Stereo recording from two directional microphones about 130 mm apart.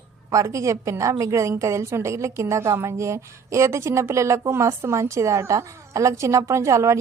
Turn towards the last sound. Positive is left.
turn(degrees=-20)  # may be behind; listen again after turning